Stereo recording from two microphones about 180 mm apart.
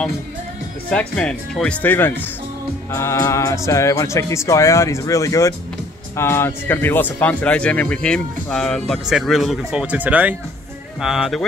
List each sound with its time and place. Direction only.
0.8 s speech: 5° left (ahead or behind)